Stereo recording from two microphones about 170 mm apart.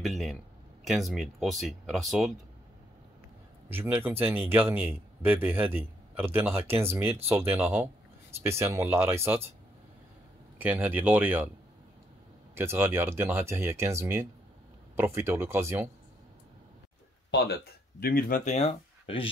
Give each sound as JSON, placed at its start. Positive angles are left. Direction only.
{"t": 0.0, "sound": "speech", "side_deg": 0}
{"t": 3.6, "sound": "speech", "side_deg": -10}
{"t": 10.6, "sound": "speech", "side_deg": -10}
{"t": 12.5, "sound": "speech", "side_deg": -15}
{"t": 18.0, "sound": "speech", "side_deg": 55}